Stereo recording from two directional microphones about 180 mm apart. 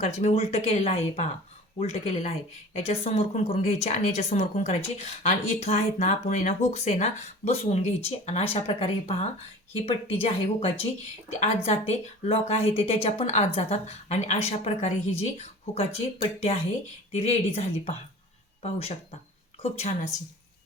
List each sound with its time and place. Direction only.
0.0 s speech: 35° left (ahead or behind)